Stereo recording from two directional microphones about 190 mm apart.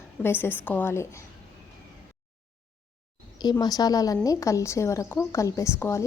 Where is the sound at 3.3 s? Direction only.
20° left (ahead or behind).